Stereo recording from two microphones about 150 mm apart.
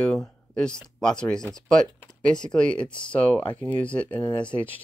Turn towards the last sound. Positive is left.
turn(degrees=10)  # may be behind; listen again after turning